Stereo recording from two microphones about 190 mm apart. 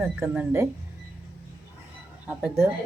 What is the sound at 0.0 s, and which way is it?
Speech, 10° right (ahead or behind).